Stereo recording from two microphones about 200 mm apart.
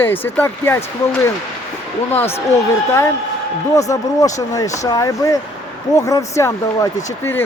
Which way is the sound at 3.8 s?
15° left (ahead or behind).